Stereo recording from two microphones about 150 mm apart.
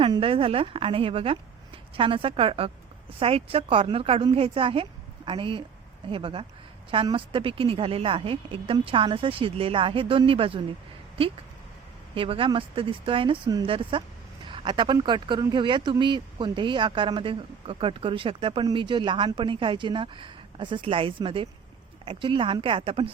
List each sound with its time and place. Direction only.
0.0 s speech: 35° right (ahead or behind)
12.1 s speech: 35° right (ahead or behind)